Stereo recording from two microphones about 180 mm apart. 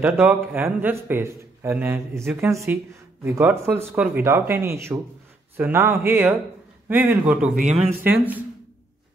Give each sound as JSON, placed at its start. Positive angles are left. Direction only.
{"t": 0.0, "sound": "a man's voice", "side_deg": -5}
{"t": 7.5, "sound": "speech", "side_deg": -40}